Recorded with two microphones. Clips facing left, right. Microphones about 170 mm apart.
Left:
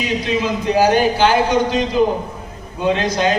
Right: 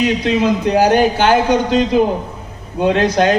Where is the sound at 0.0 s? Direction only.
65° right (ahead or behind).